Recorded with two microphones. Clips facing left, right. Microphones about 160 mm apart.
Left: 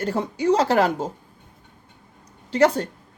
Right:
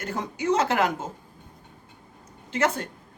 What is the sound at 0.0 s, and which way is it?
Speech, 30° left (ahead or behind).